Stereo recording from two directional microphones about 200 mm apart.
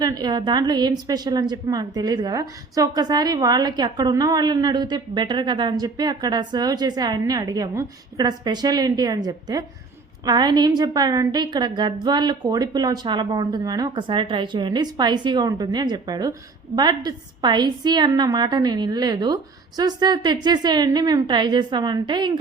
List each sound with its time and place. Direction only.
0.0 s a woman's voice: 20° right (ahead or behind)